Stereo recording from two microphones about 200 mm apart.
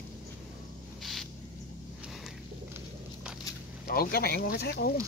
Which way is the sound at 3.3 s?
5° right (ahead or behind).